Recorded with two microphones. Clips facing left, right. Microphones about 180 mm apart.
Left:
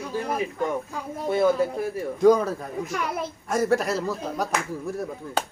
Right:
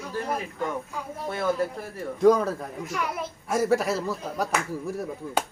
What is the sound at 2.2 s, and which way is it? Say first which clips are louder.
A man's voice: left 1 dB; centre (ahead or behind).